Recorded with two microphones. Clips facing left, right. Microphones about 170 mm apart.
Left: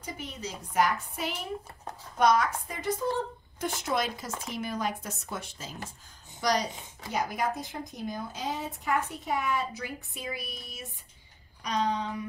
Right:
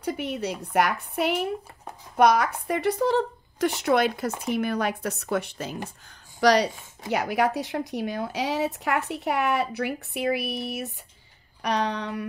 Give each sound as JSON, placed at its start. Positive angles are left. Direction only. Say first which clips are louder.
{"t": 0.0, "sound": "a woman's voice", "louder": "right 10 dB", "side_deg": -65}
{"t": 6.4, "sound": "speech", "louder": "right 8 dB", "side_deg": -75}